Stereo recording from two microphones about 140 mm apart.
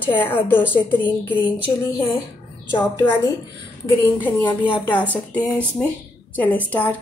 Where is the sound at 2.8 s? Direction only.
15° left (ahead or behind).